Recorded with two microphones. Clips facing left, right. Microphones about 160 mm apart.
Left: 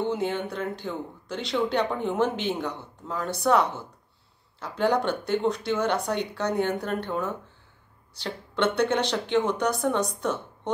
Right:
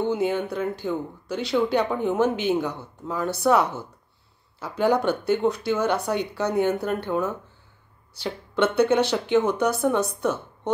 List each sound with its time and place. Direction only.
0.0 s speech: 5° right (ahead or behind)